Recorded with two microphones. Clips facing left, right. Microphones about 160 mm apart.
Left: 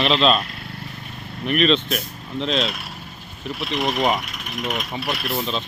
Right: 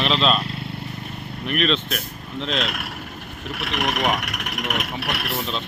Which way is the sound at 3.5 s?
65° right (ahead or behind).